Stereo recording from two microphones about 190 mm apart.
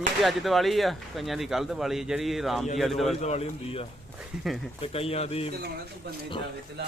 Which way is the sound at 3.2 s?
35° left (ahead or behind).